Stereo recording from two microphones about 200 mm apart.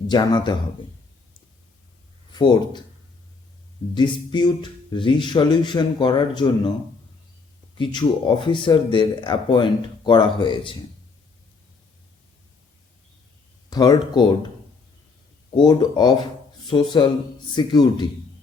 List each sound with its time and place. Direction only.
0.1 s speech: 20° left (ahead or behind)
2.3 s speech: 20° left (ahead or behind)
3.9 s speech: 20° left (ahead or behind)
7.8 s speech: 25° left (ahead or behind)
13.7 s speech: 20° left (ahead or behind)
15.5 s speech: 20° left (ahead or behind)